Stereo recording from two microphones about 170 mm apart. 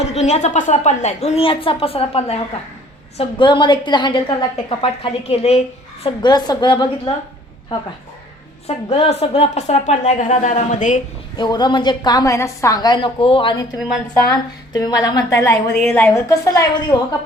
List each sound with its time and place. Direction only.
0.1 s a woman's voice: 40° left (ahead or behind)
6.2 s a woman's voice: 25° left (ahead or behind)
8.6 s a woman's voice: 35° left (ahead or behind)
11.3 s a woman's voice: 25° left (ahead or behind)